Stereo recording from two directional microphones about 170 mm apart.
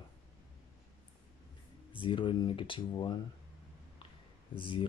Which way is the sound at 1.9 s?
30° left (ahead or behind).